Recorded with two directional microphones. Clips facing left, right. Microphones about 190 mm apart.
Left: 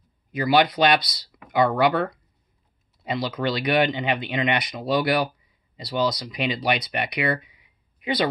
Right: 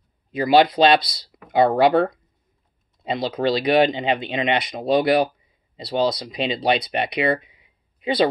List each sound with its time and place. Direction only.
0.3 s speech: 25° right (ahead or behind)